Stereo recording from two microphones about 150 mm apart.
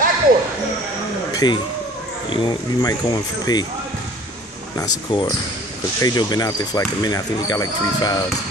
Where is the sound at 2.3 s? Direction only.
30° left (ahead or behind).